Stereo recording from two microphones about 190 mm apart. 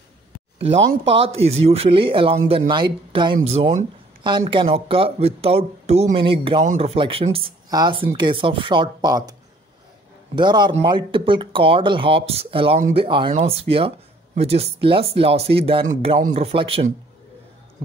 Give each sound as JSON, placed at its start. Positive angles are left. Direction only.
{"t": 0.6, "sound": "speech", "side_deg": -30}
{"t": 10.3, "sound": "speech", "side_deg": -25}